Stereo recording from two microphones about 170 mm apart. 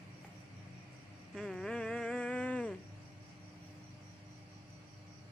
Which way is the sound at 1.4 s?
Centre (ahead or behind).